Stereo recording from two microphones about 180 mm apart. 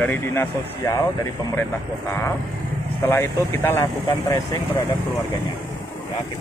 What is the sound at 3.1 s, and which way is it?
Speech, 15° left (ahead or behind).